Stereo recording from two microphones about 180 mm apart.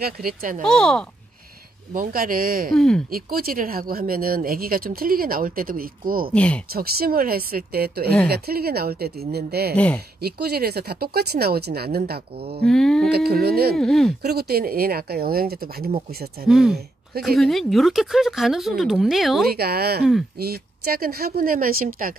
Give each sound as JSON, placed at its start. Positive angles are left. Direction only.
{"t": 0.0, "sound": "speech", "side_deg": -55}
{"t": 0.7, "sound": "speech", "side_deg": 5}
{"t": 2.0, "sound": "speech", "side_deg": -50}
{"t": 2.7, "sound": "speech", "side_deg": 0}
{"t": 3.1, "sound": "speech", "side_deg": -55}
{"t": 6.3, "sound": "speech", "side_deg": 5}
{"t": 6.7, "sound": "speech", "side_deg": -55}
{"t": 12.6, "sound": "speech", "side_deg": 5}
{"t": 13.1, "sound": "speech", "side_deg": -60}
{"t": 13.7, "sound": "speech", "side_deg": 0}
{"t": 14.2, "sound": "speech", "side_deg": -60}
{"t": 16.4, "sound": "speech", "side_deg": 0}
{"t": 19.5, "sound": "speech", "side_deg": -60}